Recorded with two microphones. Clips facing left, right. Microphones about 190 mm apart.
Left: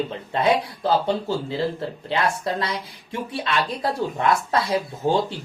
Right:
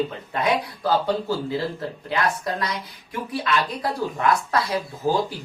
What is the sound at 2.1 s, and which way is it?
A woman's voice, 30° left (ahead or behind).